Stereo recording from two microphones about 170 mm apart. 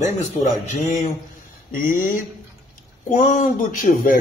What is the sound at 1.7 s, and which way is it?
A man's voice, 55° left (ahead or behind).